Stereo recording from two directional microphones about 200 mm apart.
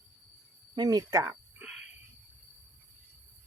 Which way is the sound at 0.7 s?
20° right (ahead or behind).